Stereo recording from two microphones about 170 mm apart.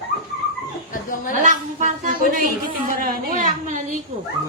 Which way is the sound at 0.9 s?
55° left (ahead or behind).